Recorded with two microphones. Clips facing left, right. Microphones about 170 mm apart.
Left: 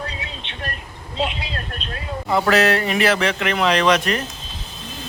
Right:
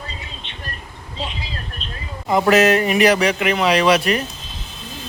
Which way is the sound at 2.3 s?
15° right (ahead or behind).